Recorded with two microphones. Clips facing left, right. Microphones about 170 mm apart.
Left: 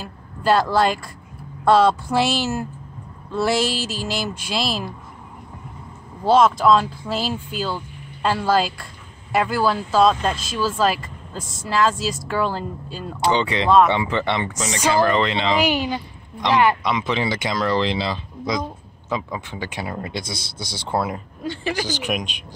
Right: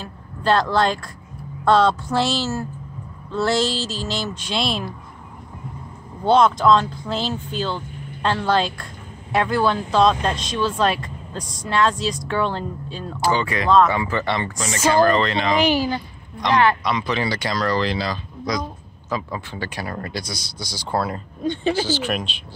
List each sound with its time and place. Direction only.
0.0 s speech: 5° left (ahead or behind)
6.2 s speech: 5° left (ahead or behind)
13.2 s speech: 20° left (ahead or behind)